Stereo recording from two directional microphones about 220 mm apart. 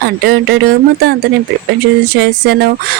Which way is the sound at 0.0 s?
45° right (ahead or behind).